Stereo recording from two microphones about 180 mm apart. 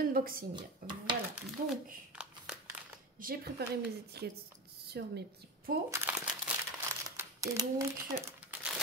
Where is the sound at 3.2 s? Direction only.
55° right (ahead or behind).